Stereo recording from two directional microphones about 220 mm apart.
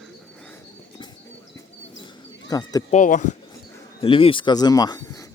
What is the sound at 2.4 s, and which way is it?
Speech, 15° left (ahead or behind).